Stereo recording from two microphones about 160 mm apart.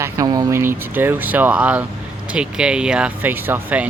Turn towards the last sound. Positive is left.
turn(degrees=-10)  # may be behind; listen again after turning